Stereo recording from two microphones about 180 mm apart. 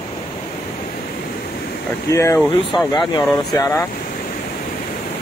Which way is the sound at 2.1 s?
15° left (ahead or behind).